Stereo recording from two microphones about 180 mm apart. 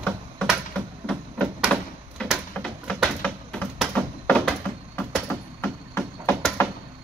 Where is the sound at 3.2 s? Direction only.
5° left (ahead or behind).